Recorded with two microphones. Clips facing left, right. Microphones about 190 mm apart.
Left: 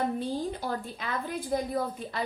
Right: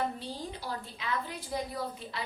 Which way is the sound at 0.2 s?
50° left (ahead or behind).